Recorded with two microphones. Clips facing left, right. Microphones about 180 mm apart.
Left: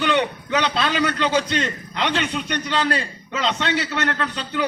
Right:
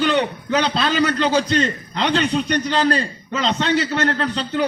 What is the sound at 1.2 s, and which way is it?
A man's voice, 35° right (ahead or behind).